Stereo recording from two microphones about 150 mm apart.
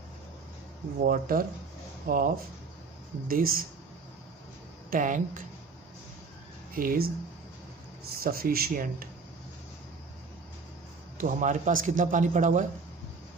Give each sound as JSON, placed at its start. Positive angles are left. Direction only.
{"t": 1.0, "sound": "speech", "side_deg": -70}
{"t": 4.9, "sound": "a man's voice", "side_deg": -60}
{"t": 6.7, "sound": "speech", "side_deg": -70}
{"t": 8.1, "sound": "speech", "side_deg": -85}
{"t": 11.1, "sound": "a man's voice", "side_deg": -60}